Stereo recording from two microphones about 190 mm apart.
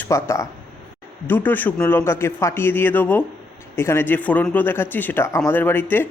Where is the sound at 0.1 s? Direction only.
15° left (ahead or behind).